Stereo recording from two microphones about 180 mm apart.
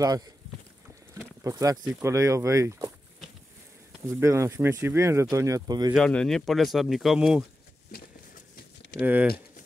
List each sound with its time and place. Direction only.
1.1 s a sound: 15° right (ahead or behind)
1.9 s speech: 10° right (ahead or behind)
4.1 s speech: 15° right (ahead or behind)
5.9 s speech: 5° left (ahead or behind)
9.0 s speech: 10° right (ahead or behind)